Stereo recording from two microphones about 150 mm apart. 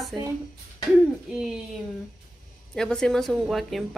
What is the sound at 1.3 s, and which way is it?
Speech, 5° right (ahead or behind).